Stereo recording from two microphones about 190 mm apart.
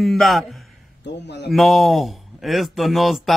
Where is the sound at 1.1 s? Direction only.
65° left (ahead or behind).